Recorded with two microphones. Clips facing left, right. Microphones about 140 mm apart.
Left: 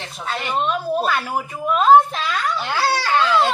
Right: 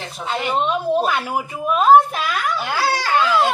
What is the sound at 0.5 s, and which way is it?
Speech, 20° right (ahead or behind).